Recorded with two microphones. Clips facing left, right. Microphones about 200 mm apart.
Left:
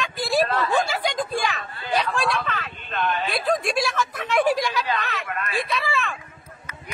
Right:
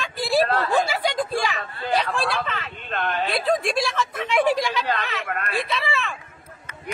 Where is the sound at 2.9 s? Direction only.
60° right (ahead or behind).